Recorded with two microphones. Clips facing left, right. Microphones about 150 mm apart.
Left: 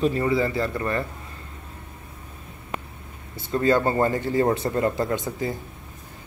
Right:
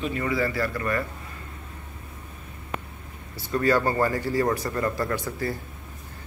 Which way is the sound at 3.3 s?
25° left (ahead or behind).